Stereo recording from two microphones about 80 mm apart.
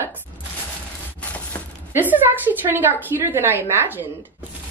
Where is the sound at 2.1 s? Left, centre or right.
Right.